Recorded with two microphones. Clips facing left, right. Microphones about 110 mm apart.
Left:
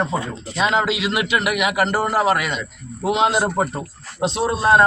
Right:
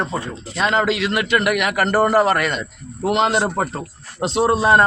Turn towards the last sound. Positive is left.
turn(degrees=0)  # may be behind; listen again after turning